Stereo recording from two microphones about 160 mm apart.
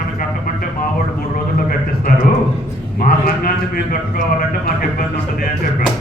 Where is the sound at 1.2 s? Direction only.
65° left (ahead or behind).